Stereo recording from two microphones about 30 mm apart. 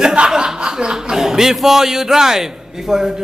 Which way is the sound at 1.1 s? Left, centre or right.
Centre.